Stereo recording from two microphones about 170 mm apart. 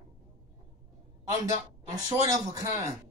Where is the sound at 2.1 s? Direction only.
20° right (ahead or behind).